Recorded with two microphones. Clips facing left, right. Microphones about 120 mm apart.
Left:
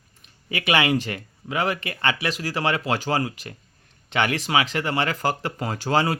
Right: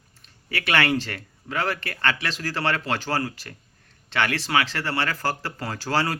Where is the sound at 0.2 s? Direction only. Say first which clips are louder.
Left 1 dB; 15° left (ahead or behind).